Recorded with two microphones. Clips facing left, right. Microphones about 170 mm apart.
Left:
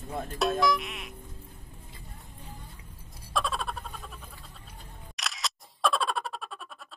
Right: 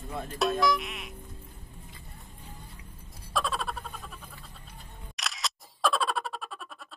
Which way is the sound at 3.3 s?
Centre (ahead or behind).